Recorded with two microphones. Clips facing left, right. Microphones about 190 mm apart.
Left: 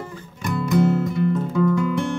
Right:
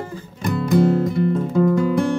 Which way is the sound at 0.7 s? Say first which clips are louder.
Right 2 dB; 35° right (ahead or behind).